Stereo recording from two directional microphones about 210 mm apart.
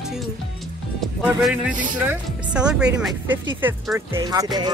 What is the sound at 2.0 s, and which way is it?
Speech, 5° right (ahead or behind).